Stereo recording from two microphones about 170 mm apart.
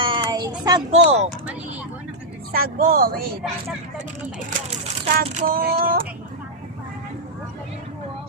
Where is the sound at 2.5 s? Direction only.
60° right (ahead or behind).